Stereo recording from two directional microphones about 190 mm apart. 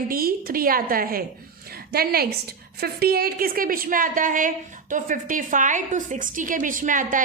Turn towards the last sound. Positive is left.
turn(degrees=-45)  # may be behind; listen again after turning